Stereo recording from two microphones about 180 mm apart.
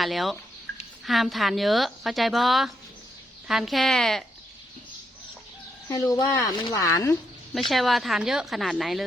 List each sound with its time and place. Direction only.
0.0 s speech: centre (ahead or behind)
5.9 s speech: 20° left (ahead or behind)
7.5 s speech: centre (ahead or behind)